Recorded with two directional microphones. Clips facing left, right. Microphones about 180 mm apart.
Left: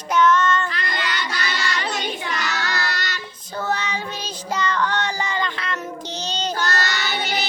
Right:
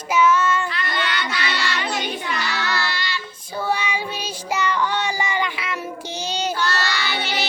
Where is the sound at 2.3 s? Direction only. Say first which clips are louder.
Right 1 dB; 45° left (ahead or behind).